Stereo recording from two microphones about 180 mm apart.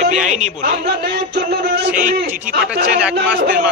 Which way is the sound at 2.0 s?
50° right (ahead or behind).